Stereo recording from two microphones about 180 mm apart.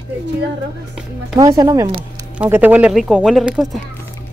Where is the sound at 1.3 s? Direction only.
20° right (ahead or behind); by 3.8 s centre (ahead or behind).